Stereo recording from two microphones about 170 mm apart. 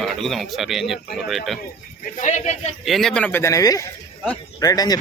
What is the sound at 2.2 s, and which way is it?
Speech, 45° left (ahead or behind).